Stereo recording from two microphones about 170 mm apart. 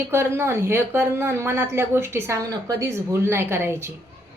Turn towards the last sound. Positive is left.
turn(degrees=-15)  # may be behind; listen again after turning